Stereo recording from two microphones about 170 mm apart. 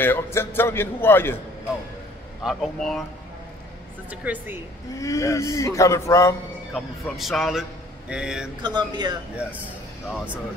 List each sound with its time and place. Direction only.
0.0 s a man's voice: 15° left (ahead or behind)
2.4 s speech: centre (ahead or behind)
4.1 s speech: 10° right (ahead or behind)
5.0 s a man's voice: 20° left (ahead or behind)
6.7 s speech: centre (ahead or behind)
8.6 s speech: 25° right (ahead or behind)
10.1 s speech: 5° right (ahead or behind)